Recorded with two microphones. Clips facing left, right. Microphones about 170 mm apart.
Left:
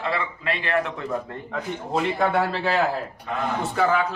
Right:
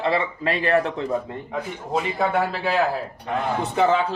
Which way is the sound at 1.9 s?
10° right (ahead or behind).